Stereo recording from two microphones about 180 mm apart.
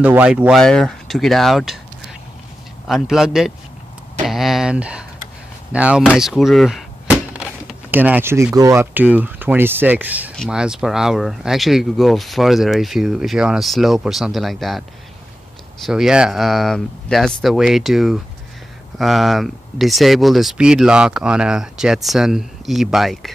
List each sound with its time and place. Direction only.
0.0 s speech: 5° right (ahead or behind)
2.9 s speech: centre (ahead or behind)
15.8 s speech: 5° right (ahead or behind)